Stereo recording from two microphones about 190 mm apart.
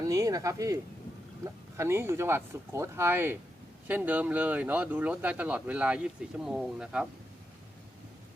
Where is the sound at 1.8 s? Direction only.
15° right (ahead or behind).